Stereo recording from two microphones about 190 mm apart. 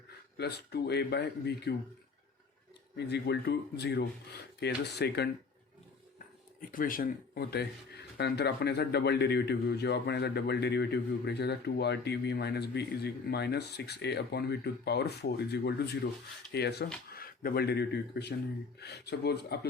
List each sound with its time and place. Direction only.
0.3 s a man's voice: 60° left (ahead or behind)
3.1 s a man's voice: 60° left (ahead or behind)
6.6 s a man's voice: 45° left (ahead or behind)